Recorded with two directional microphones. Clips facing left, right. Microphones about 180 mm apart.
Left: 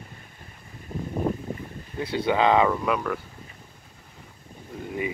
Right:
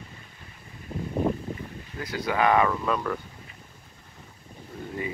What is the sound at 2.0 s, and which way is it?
Speech, 25° left (ahead or behind).